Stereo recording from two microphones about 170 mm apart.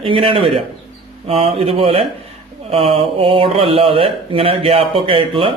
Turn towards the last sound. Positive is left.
turn(degrees=-35)  # may be behind; listen again after turning